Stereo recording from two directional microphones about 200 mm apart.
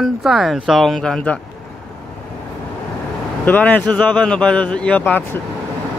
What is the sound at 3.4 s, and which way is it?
Speech, 10° left (ahead or behind).